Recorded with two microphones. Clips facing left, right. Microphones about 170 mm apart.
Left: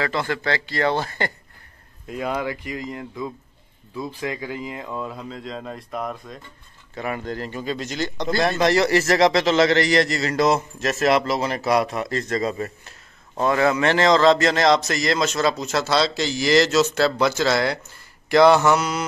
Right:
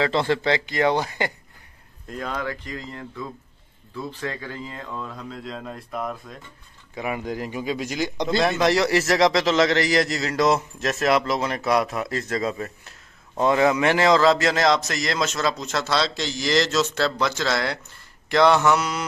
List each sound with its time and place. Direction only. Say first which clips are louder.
0.0 s a man's voice: right 3 dB; 25° right (ahead or behind)
2.0 s speech: left 3 dB; 10° left (ahead or behind)
5.3 s a man's voice: left 1 dB; centre (ahead or behind)
13.4 s a man's voice: even; 20° right (ahead or behind); by 19.0 s centre (ahead or behind)